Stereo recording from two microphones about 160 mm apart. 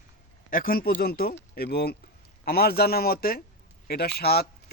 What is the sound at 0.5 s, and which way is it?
A man's voice, 65° left (ahead or behind).